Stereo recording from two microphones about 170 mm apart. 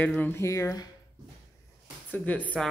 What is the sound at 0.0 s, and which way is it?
Speech, 10° left (ahead or behind).